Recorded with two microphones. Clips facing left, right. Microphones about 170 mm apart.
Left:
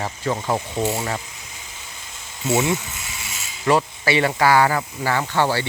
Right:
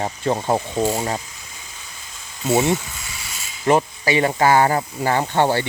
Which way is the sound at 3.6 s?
20° right (ahead or behind).